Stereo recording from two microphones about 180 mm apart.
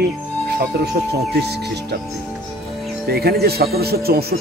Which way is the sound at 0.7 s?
70° right (ahead or behind).